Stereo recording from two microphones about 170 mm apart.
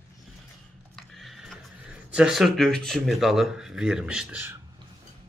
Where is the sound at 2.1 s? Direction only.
Centre (ahead or behind).